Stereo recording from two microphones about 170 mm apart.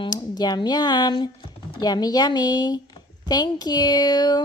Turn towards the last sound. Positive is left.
turn(degrees=25)  # may be behind; listen again after turning